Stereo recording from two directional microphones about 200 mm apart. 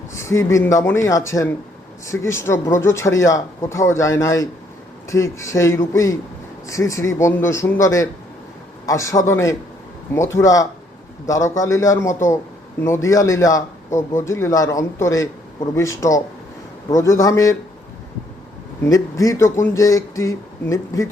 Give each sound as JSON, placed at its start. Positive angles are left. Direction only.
{"t": 0.1, "sound": "speech", "side_deg": 15}
{"t": 18.9, "sound": "speech", "side_deg": 15}